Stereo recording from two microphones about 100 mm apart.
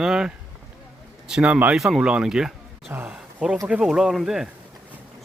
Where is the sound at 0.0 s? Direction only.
5° right (ahead or behind).